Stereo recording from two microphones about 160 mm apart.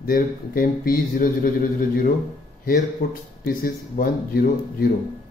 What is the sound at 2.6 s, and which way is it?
Speech, 60° left (ahead or behind).